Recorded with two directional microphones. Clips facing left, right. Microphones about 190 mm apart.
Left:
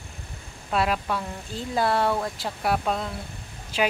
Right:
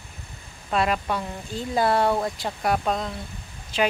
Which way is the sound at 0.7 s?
Centre (ahead or behind).